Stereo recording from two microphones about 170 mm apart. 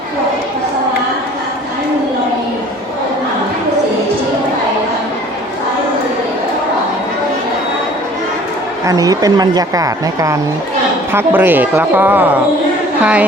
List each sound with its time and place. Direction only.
8.9 s a woman's voice: 20° right (ahead or behind)